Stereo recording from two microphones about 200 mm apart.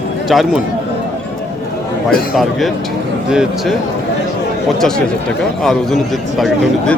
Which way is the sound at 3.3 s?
5° right (ahead or behind).